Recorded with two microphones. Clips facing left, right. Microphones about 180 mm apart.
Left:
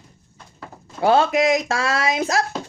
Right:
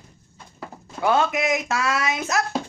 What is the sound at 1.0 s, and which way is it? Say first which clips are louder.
Speech: left 4 dB; 35° left (ahead or behind).